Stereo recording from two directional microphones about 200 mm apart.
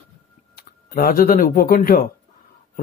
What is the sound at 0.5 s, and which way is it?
A man's voice, 45° left (ahead or behind).